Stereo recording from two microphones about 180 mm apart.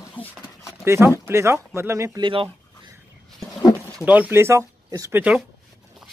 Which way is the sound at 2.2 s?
30° right (ahead or behind).